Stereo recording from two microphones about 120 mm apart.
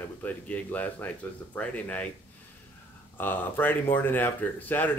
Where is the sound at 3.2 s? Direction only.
15° left (ahead or behind).